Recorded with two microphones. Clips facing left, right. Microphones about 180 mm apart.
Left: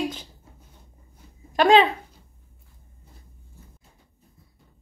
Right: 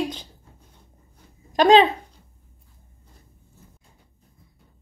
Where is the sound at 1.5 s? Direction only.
20° right (ahead or behind).